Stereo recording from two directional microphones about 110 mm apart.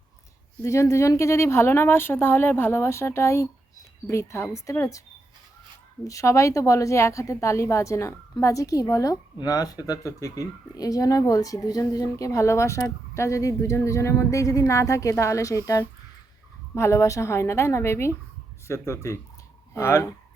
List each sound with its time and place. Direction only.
0.6 s speech: 30° left (ahead or behind)
6.1 s speech: 30° left (ahead or behind)